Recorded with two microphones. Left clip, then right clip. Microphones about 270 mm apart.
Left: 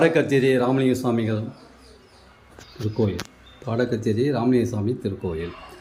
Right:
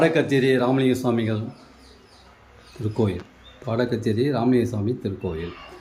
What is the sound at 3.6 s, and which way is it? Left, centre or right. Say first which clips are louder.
Speech: even; centre.